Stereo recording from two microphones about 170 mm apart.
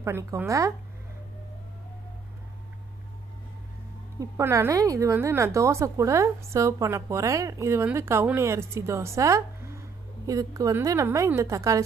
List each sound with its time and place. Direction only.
0.0 s a woman's voice: 15° right (ahead or behind)
4.2 s a woman's voice: 15° right (ahead or behind)